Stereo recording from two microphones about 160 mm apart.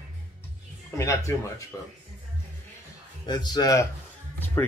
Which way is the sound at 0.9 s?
20° left (ahead or behind).